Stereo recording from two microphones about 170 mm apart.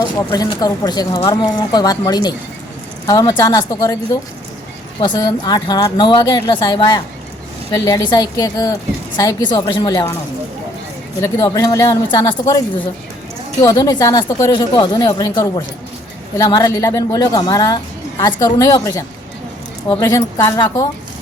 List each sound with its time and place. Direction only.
0.0 s speech: 25° left (ahead or behind)
4.9 s speech: 25° left (ahead or behind)
11.2 s speech: 20° left (ahead or behind)